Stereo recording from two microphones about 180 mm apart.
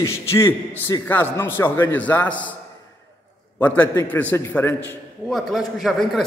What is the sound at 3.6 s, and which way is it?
A man's voice, 10° left (ahead or behind).